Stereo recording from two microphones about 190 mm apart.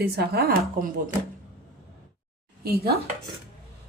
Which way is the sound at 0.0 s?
55° right (ahead or behind).